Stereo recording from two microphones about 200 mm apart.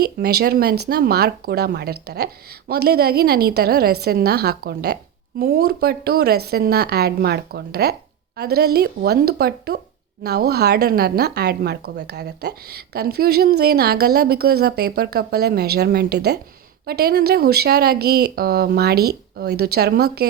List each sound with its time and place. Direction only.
0.0 s a woman's voice: 50° right (ahead or behind)